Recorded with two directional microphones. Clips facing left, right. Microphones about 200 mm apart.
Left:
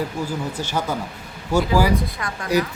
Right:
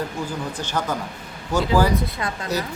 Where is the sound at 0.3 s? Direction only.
10° left (ahead or behind).